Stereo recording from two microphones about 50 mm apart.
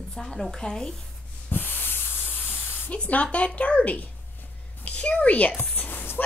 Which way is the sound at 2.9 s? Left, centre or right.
Left.